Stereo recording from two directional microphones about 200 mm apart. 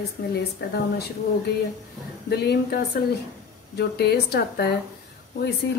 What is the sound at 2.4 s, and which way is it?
Speech, 55° left (ahead or behind).